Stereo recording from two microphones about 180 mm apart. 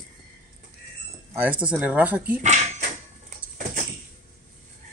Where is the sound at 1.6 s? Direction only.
10° right (ahead or behind).